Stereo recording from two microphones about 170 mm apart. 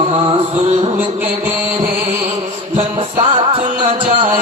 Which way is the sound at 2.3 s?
30° right (ahead or behind).